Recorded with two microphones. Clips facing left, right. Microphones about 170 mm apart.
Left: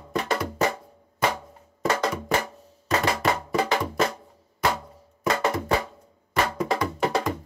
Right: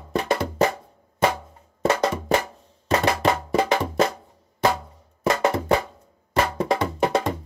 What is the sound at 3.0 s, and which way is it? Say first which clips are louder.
Music: right 3 dB; 30° right (ahead or behind).